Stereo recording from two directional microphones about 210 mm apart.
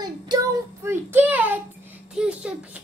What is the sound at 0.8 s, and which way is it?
Child singing, 10° right (ahead or behind).